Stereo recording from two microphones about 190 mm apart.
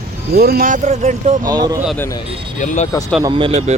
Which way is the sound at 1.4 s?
20° right (ahead or behind).